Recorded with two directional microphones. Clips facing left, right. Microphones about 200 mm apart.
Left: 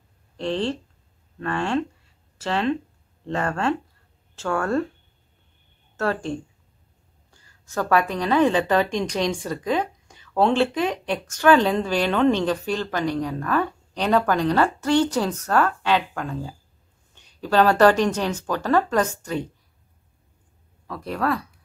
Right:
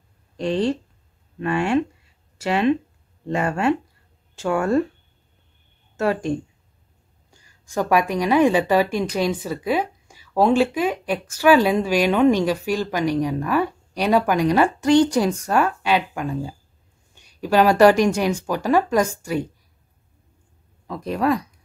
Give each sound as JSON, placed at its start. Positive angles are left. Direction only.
{"t": 0.4, "sound": "a woman's voice", "side_deg": -15}
{"t": 5.9, "sound": "a woman's voice", "side_deg": -15}
{"t": 20.8, "sound": "a woman's voice", "side_deg": -15}